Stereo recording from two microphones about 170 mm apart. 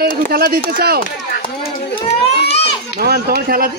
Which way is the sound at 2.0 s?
35° left (ahead or behind).